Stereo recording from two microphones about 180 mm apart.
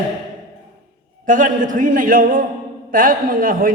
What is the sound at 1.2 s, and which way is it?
A man's voice, 45° right (ahead or behind).